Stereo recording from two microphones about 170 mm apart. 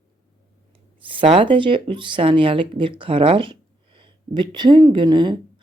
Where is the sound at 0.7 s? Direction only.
30° right (ahead or behind).